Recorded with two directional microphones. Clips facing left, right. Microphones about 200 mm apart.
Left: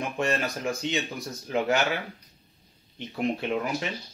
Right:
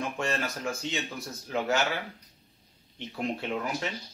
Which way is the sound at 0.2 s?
15° left (ahead or behind).